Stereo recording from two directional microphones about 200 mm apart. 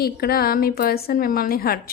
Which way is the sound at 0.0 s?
50° left (ahead or behind).